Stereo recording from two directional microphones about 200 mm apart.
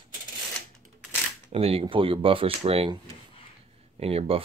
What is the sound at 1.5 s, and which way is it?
Speech, 30° right (ahead or behind).